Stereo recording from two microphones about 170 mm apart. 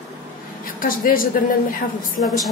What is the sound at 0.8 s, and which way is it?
Speech, 55° left (ahead or behind).